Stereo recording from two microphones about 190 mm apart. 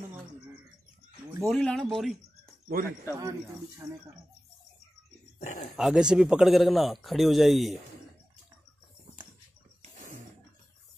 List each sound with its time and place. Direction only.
1.4 s speech: 5° left (ahead or behind)
3.2 s speech: 20° right (ahead or behind)
5.4 s speech: 40° left (ahead or behind)
5.8 s a man's voice: 5° right (ahead or behind)
9.8 s a sound: 45° right (ahead or behind)